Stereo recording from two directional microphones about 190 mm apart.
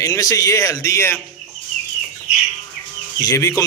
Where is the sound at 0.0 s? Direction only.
15° left (ahead or behind).